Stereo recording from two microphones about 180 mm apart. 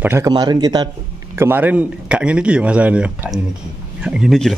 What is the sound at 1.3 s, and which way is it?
Speech, 10° right (ahead or behind).